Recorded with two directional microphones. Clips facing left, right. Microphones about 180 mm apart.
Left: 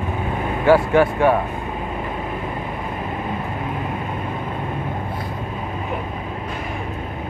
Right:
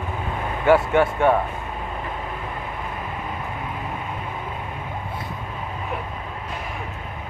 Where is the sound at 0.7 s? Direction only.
25° right (ahead or behind).